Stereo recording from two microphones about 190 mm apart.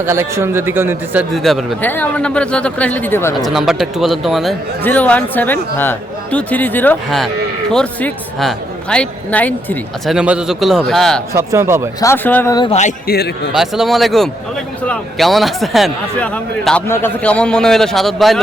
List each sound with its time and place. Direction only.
0.0 s a man's voice: 15° right (ahead or behind)
1.3 s speech: centre (ahead or behind)
3.3 s speech: centre (ahead or behind)
10.2 s speech: 5° right (ahead or behind)
11.3 s a man's voice: 15° right (ahead or behind)
11.9 s speech: 15° left (ahead or behind)
13.1 s a man's voice: 60° left (ahead or behind)
13.5 s speech: centre (ahead or behind)